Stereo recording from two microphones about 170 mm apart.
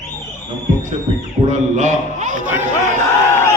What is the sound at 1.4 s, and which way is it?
Speech, 45° right (ahead or behind).